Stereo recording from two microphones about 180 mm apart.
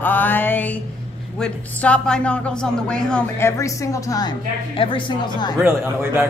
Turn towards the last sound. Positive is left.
turn(degrees=-10)  # may be behind; listen again after turning